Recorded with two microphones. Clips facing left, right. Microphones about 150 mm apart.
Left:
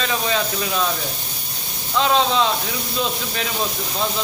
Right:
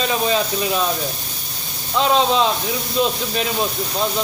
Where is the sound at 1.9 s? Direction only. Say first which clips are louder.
Right 2 dB; 15° right (ahead or behind).